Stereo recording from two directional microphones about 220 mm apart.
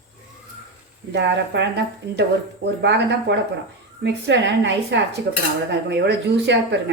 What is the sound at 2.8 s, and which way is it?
A woman's voice, 50° right (ahead or behind).